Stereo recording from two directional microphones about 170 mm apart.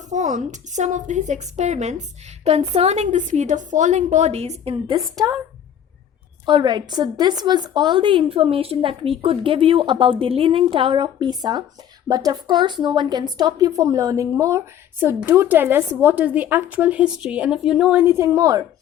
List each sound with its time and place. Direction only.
0.1 s a woman's voice: 45° right (ahead or behind)
5.2 s a woman's voice: 20° right (ahead or behind)
6.4 s a woman's voice: 25° right (ahead or behind)